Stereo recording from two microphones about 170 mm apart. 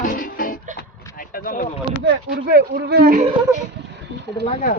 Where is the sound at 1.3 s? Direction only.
55° left (ahead or behind).